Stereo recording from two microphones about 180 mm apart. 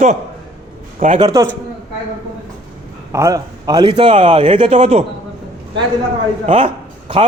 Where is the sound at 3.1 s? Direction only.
15° right (ahead or behind); by 5.0 s 35° right (ahead or behind).